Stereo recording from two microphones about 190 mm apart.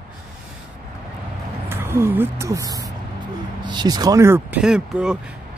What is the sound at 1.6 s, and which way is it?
A woman's voice, 10° right (ahead or behind).